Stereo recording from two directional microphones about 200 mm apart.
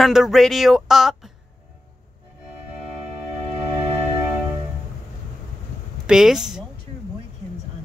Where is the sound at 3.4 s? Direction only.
30° right (ahead or behind).